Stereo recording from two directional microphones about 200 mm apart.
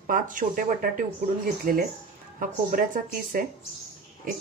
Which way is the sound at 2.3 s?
40° right (ahead or behind).